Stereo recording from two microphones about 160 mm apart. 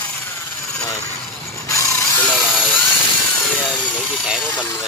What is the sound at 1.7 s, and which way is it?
Vehicle, 20° left (ahead or behind).